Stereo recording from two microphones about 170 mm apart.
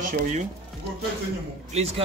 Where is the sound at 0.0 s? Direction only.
45° right (ahead or behind).